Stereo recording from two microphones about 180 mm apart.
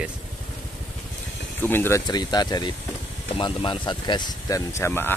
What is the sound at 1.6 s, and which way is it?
Speech, 10° left (ahead or behind).